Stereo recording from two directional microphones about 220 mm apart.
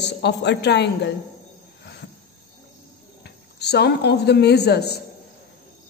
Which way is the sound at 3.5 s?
50° left (ahead or behind).